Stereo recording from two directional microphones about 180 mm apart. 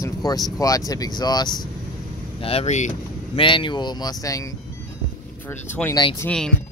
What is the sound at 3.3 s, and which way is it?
Speech, 25° left (ahead or behind).